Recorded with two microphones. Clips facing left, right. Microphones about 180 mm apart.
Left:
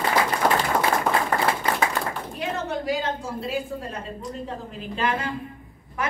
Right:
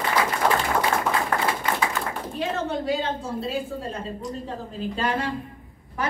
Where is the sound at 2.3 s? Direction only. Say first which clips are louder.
Right 3 dB; 30° right (ahead or behind).